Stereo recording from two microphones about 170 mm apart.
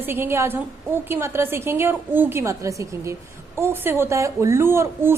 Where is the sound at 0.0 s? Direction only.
15° right (ahead or behind).